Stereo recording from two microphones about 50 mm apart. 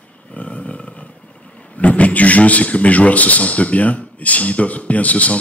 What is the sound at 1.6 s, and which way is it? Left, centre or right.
A man's voice, left.